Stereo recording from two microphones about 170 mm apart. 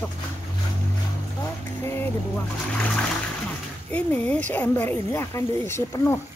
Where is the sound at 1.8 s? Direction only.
15° left (ahead or behind).